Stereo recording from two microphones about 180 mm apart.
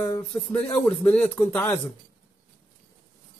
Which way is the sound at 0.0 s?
10° left (ahead or behind).